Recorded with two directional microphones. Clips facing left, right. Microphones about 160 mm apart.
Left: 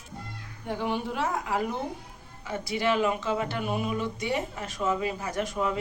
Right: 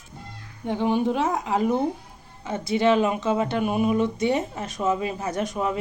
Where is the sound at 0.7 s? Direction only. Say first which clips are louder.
Right 7 dB; 20° right (ahead or behind).